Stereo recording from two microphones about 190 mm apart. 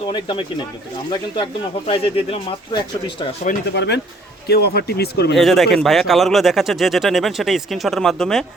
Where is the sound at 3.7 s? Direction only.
65° left (ahead or behind).